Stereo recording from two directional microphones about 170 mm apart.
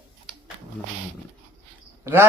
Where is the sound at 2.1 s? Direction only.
15° right (ahead or behind).